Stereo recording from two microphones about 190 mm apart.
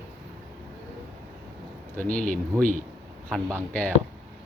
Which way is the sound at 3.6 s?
5° left (ahead or behind).